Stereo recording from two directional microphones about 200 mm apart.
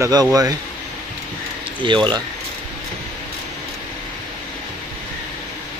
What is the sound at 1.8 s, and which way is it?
Speech, 25° right (ahead or behind).